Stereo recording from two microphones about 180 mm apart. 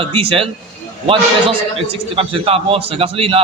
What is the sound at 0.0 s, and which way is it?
A man's voice, 30° right (ahead or behind).